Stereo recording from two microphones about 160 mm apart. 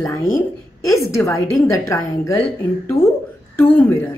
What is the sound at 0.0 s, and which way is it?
A woman's voice, 20° left (ahead or behind).